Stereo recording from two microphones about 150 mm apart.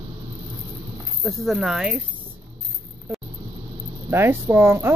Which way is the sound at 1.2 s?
Centre (ahead or behind).